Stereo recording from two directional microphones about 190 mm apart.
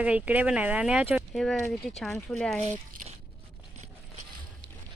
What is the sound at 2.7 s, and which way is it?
Crumpling, 40° right (ahead or behind).